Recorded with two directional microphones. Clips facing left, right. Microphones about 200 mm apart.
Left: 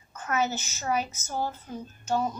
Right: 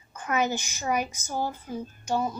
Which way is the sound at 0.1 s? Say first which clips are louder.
Right 1 dB; 15° right (ahead or behind).